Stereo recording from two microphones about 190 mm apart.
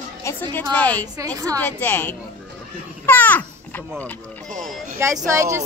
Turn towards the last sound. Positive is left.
turn(degrees=-15)  # may be behind; listen again after turning